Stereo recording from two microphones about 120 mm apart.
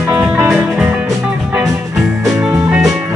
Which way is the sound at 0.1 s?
15° right (ahead or behind).